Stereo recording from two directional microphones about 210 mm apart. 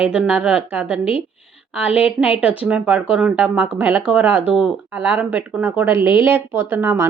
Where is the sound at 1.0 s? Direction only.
25° left (ahead or behind).